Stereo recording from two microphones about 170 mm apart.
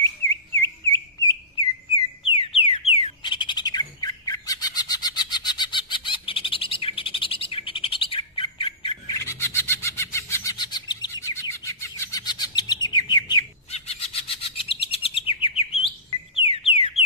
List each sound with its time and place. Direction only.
0.6 s bird: 15° left (ahead or behind)
2.2 s bird: 35° left (ahead or behind)
9.2 s a sound: 15° left (ahead or behind)
13.7 s bird: 40° left (ahead or behind)
16.3 s alarm: 35° left (ahead or behind)